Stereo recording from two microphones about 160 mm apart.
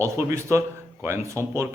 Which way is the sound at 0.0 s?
20° right (ahead or behind).